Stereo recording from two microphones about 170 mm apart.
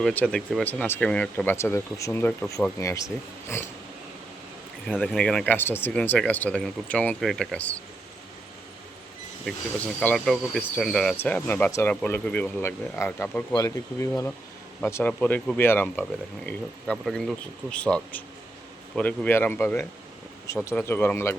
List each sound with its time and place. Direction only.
0.0 s speech: 10° left (ahead or behind)
4.9 s speech: 5° left (ahead or behind)
10.0 s speech: 5° left (ahead or behind)
13.5 s speech: 20° left (ahead or behind)